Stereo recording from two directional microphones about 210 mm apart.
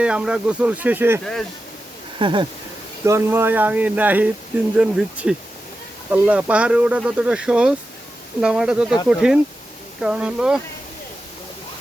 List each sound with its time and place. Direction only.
0.0 s speech: 5° right (ahead or behind)
1.2 s speech: centre (ahead or behind)
2.1 s a sound: 20° right (ahead or behind)
3.0 s speech: 10° right (ahead or behind)